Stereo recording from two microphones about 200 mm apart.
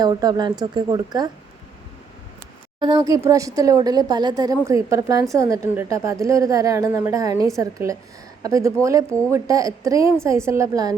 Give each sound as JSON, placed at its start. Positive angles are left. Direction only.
{"t": 0.0, "sound": "speech", "side_deg": -20}
{"t": 2.8, "sound": "speech", "side_deg": -15}